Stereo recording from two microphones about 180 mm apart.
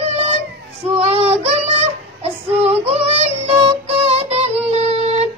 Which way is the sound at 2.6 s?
35° right (ahead or behind).